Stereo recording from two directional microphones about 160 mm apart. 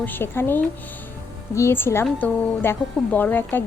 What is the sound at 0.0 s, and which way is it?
Speech, 15° left (ahead or behind).